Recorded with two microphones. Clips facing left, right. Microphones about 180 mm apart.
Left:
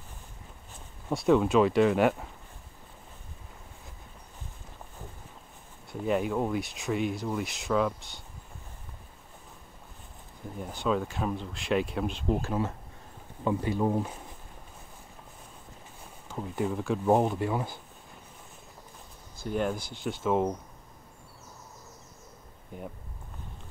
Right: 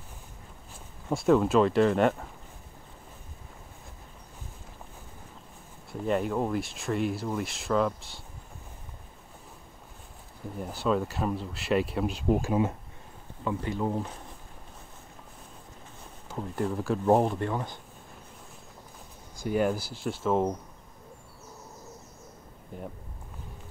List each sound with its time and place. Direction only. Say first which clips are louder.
1.0 s speech: right 1 dB; centre (ahead or behind)
5.9 s speech: even; 5° left (ahead or behind)
10.6 s speech: right 1 dB; 5° right (ahead or behind)
13.4 s speech: left 3 dB; 15° left (ahead or behind)
16.3 s speech: even; centre (ahead or behind)
19.3 s speech: right 3 dB; 10° right (ahead or behind)
22.7 s speech: right 1 dB; centre (ahead or behind)